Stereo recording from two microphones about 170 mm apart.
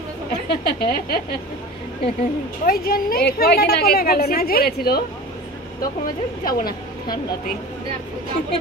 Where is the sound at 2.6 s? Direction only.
60° left (ahead or behind).